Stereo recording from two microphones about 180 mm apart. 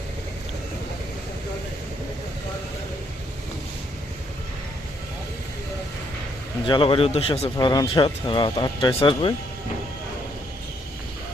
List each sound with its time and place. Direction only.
6.7 s speech: 30° left (ahead or behind)
7.5 s speech: 20° left (ahead or behind)